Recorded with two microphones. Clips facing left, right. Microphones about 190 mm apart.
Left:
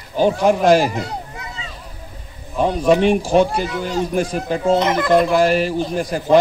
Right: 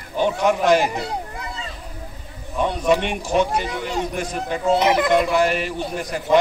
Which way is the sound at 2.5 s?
30° left (ahead or behind).